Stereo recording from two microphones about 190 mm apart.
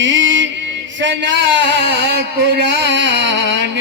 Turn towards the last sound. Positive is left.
turn(degrees=-70)  # may be behind; listen again after turning